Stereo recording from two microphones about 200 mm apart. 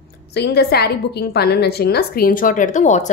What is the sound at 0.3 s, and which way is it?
A woman's voice, 50° left (ahead or behind).